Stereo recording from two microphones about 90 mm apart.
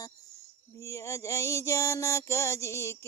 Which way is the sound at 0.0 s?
40° left (ahead or behind).